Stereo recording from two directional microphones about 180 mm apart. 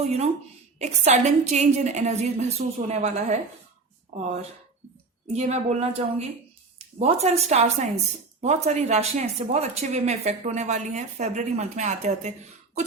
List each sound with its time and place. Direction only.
0.0 s speech: 35° right (ahead or behind)
5.3 s speech: 35° right (ahead or behind)